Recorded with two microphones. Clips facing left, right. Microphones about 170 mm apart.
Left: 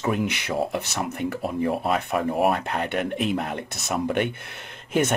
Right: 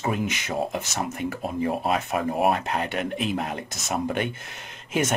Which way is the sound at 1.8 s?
50° left (ahead or behind).